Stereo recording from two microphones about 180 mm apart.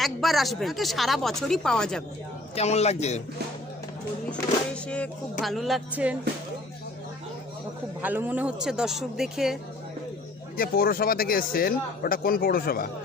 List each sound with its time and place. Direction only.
0.0 s speech: centre (ahead or behind)
2.6 s a man's voice: 35° left (ahead or behind)
4.3 s speech: 5° left (ahead or behind)
8.0 s speech: 10° right (ahead or behind)
10.6 s speech: 55° left (ahead or behind)